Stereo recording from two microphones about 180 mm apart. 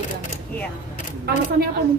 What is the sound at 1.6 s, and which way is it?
Speech, 55° right (ahead or behind).